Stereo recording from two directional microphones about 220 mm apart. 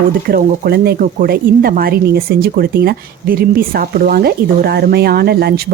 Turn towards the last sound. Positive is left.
turn(degrees=-45)  # may be behind; listen again after turning